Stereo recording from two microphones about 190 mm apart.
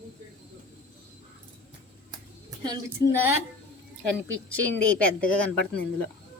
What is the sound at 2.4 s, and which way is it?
Music, 20° right (ahead or behind).